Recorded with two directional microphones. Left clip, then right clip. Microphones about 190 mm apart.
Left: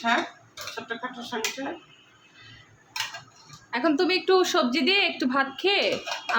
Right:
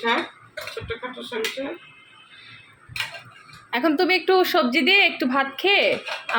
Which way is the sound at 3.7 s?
5° right (ahead or behind).